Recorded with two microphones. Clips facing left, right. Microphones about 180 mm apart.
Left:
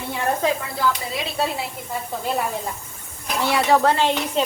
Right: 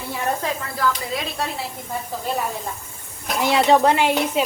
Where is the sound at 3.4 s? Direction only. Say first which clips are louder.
Right 2 dB; 20° right (ahead or behind).